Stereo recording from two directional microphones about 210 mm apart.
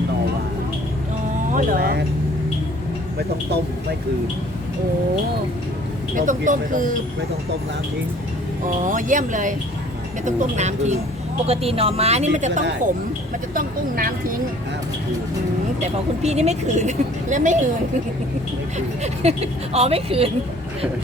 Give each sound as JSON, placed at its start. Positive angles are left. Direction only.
{"t": 1.5, "sound": "speech", "side_deg": -45}
{"t": 6.1, "sound": "speech", "side_deg": -40}
{"t": 8.6, "sound": "speech", "side_deg": -40}
{"t": 15.8, "sound": "speech", "side_deg": -30}
{"t": 19.0, "sound": "speech", "side_deg": -30}